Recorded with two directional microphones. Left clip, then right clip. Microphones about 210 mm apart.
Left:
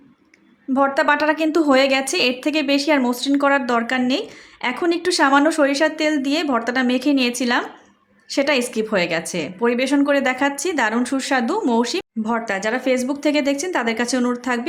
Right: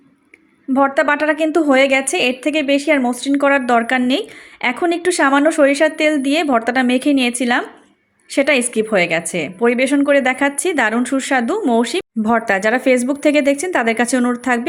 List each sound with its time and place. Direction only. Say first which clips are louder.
0.7 s a woman's voice: right 2 dB; 15° right (ahead or behind)